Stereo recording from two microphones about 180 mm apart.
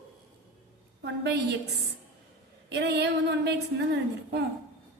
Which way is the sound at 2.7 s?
70° right (ahead or behind).